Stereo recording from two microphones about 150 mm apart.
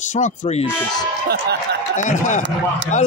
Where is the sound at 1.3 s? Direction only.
90° right.